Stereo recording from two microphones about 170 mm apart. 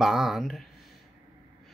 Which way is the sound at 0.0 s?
Centre (ahead or behind).